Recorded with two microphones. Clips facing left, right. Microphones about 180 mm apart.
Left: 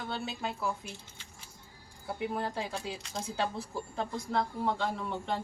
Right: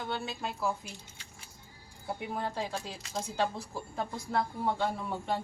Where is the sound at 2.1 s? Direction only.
Centre (ahead or behind).